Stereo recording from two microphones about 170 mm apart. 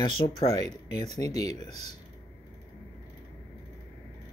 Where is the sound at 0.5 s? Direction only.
25° left (ahead or behind).